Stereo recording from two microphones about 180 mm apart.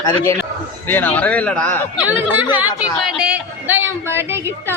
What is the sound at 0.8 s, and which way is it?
Speech, 10° left (ahead or behind).